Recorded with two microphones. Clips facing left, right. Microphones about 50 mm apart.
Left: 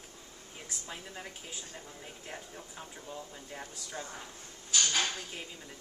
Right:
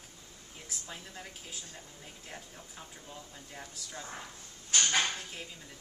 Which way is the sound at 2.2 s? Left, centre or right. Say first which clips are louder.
Left 3 dB; centre.